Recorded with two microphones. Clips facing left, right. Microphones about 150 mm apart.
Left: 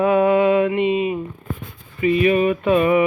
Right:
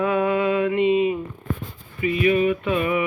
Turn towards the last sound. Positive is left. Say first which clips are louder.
# left 6 dB
turn(degrees=30)  # may be behind; listen again after turning